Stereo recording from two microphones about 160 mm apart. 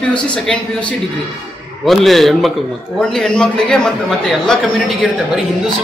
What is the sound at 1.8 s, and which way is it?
A man's voice, centre (ahead or behind).